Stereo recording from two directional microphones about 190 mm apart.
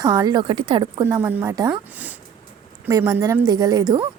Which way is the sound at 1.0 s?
15° right (ahead or behind).